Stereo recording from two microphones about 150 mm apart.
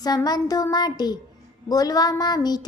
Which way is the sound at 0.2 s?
25° left (ahead or behind).